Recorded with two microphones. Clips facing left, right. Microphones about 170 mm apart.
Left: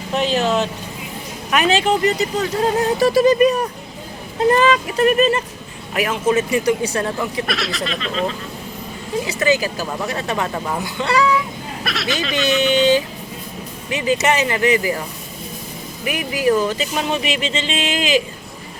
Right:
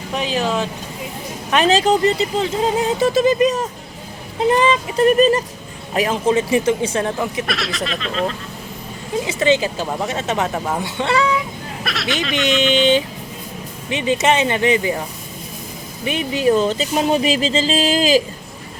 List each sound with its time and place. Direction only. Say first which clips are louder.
0.2 s speech: left 2 dB; 10° right (ahead or behind)
1.5 s speech: right 2 dB; 30° right (ahead or behind)
4.9 s speech: right 4 dB; 35° right (ahead or behind)
7.4 s speech: even; centre (ahead or behind)
9.2 s speech: right 2 dB; 25° right (ahead or behind)
11.8 s speech: even; centre (ahead or behind)
13.9 s speech: right 1 dB; 25° right (ahead or behind)
16.0 s speech: right 1 dB; 25° right (ahead or behind)